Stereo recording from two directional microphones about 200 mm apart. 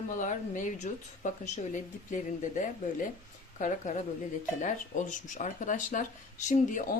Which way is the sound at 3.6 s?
40° left (ahead or behind).